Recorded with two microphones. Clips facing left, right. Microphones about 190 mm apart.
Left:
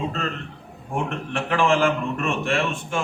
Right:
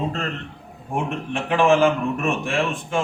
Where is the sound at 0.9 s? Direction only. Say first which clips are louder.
Right 1 dB; 15° right (ahead or behind).